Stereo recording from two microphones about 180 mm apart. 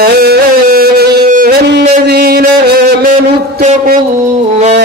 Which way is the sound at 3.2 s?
35° right (ahead or behind).